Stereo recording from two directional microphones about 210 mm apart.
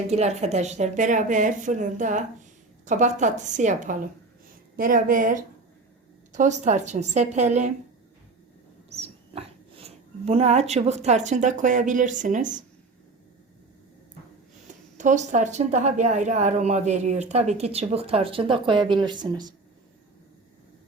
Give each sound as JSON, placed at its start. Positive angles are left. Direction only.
{"t": 0.1, "sound": "a woman's voice", "side_deg": -30}
{"t": 8.9, "sound": "speech", "side_deg": -30}
{"t": 14.9, "sound": "a woman's voice", "side_deg": -35}